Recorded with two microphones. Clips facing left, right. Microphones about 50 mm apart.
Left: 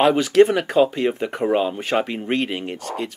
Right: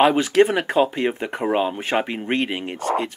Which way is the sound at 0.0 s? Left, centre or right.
Centre.